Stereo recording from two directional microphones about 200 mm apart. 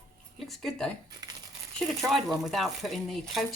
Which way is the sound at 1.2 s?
20° right (ahead or behind).